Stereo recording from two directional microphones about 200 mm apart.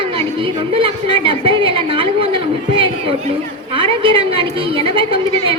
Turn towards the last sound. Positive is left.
turn(degrees=-25)  # may be behind; listen again after turning